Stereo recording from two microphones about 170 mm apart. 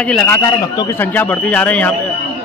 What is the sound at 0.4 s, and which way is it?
Speech, 25° left (ahead or behind).